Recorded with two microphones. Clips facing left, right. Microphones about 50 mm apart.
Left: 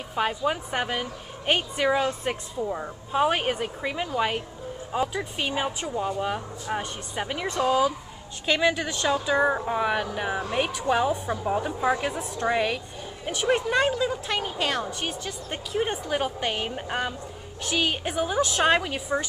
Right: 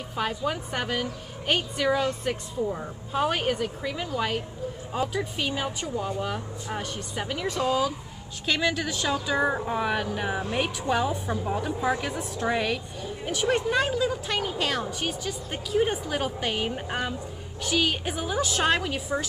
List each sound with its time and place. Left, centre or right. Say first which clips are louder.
0.1 s speech: left 3 dB; centre
3.3 s speech: even; left
4.9 s a woman's voice: left 1 dB; centre
5.4 s a woman's voice: left 2 dB; centre